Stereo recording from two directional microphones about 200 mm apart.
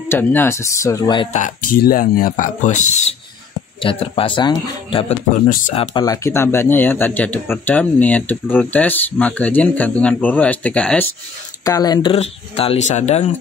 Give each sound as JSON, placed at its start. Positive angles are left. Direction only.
{"t": 0.1, "sound": "speech", "side_deg": 10}
{"t": 1.3, "sound": "speech", "side_deg": 40}
{"t": 11.6, "sound": "speech", "side_deg": 20}